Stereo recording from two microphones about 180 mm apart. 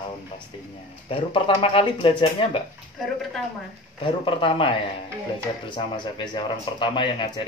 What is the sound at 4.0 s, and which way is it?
Speech, 30° left (ahead or behind).